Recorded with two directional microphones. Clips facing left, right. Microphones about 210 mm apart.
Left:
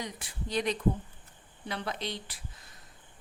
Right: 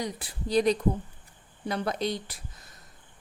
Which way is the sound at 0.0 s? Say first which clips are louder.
Right 5 dB; 35° right (ahead or behind).